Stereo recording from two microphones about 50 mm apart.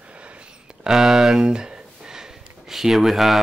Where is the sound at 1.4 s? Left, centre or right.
Centre.